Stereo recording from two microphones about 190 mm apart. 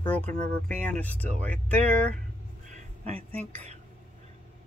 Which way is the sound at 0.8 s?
10° left (ahead or behind).